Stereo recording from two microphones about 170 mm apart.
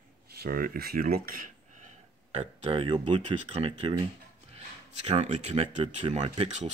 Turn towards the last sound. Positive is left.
turn(degrees=-30)  # may be behind; listen again after turning